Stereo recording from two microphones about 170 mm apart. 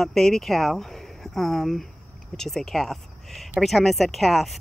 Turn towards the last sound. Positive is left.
turn(degrees=0)  # may be behind; listen again after turning